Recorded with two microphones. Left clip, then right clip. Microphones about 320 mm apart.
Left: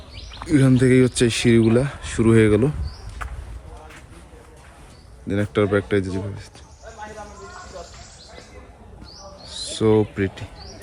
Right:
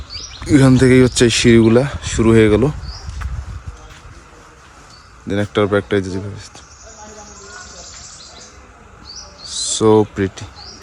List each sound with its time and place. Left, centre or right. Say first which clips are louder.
0.4 s speech: right 6 dB; centre
3.2 s a sound: left 4 dB; centre
5.3 s speech: right 4 dB; centre
9.5 s speech: right 6 dB; centre